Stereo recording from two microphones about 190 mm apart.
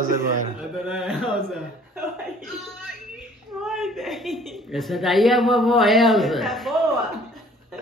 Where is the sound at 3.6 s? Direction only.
Centre (ahead or behind).